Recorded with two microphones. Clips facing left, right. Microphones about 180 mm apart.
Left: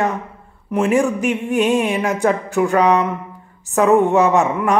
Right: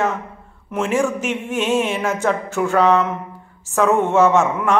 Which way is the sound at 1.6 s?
15° left (ahead or behind).